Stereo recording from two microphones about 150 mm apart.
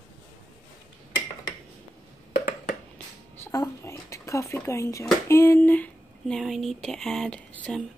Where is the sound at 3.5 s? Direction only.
20° left (ahead or behind); by 7.8 s centre (ahead or behind).